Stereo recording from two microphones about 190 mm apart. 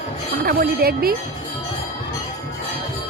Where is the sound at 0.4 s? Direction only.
55° right (ahead or behind).